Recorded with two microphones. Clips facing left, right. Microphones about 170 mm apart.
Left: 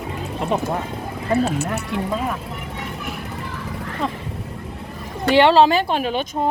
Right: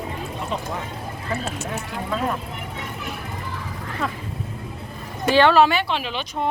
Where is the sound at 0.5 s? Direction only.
55° left (ahead or behind).